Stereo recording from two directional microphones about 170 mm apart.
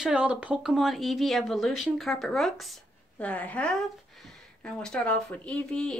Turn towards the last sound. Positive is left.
turn(degrees=5)  # may be behind; listen again after turning